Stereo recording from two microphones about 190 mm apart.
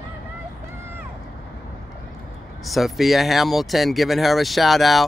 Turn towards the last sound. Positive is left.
turn(degrees=0)  # may be behind; listen again after turning